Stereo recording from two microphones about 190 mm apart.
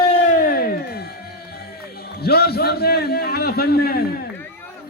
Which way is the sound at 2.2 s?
55° left (ahead or behind).